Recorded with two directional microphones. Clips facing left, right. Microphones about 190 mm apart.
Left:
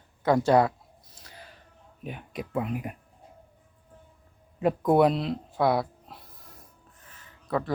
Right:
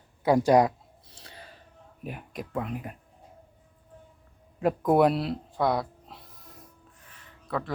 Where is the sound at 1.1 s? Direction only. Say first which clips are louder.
Right 5 dB; 30° right (ahead or behind).